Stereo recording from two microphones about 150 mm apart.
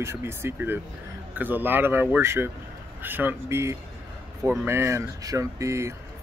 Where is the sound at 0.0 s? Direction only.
15° right (ahead or behind).